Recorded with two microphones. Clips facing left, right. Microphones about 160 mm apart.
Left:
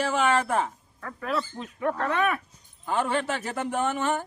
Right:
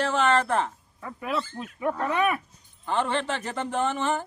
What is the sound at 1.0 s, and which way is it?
Speech, 10° right (ahead or behind).